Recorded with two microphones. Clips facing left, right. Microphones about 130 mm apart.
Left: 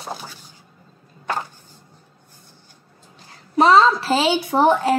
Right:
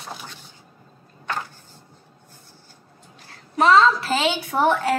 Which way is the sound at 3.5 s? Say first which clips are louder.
Left 2 dB; 35° left (ahead or behind).